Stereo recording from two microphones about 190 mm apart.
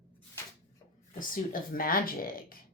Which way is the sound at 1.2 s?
45° left (ahead or behind).